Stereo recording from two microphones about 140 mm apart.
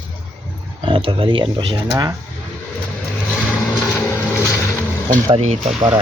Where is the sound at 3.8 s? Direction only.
20° left (ahead or behind).